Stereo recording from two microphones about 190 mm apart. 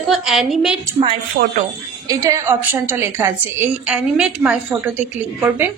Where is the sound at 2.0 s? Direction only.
15° right (ahead or behind).